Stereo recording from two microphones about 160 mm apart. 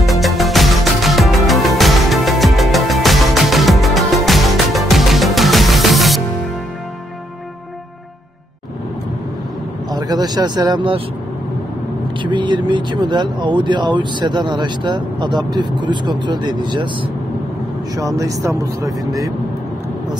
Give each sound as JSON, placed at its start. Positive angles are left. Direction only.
{"t": 0.0, "sound": "music", "side_deg": 0}
{"t": 9.8, "sound": "speech", "side_deg": -25}
{"t": 12.2, "sound": "speech", "side_deg": -30}